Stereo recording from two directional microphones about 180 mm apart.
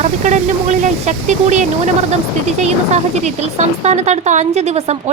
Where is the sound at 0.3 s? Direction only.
40° right (ahead or behind).